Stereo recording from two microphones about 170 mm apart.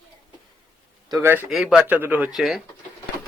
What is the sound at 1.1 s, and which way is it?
Speech, 15° right (ahead or behind).